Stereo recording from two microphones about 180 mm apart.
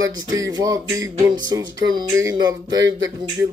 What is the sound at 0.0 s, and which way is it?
Speech, 20° right (ahead or behind).